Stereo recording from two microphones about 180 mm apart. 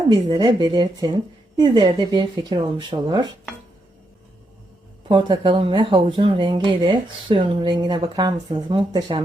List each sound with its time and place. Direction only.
0.1 s speech: 25° right (ahead or behind)
5.0 s speech: 25° right (ahead or behind)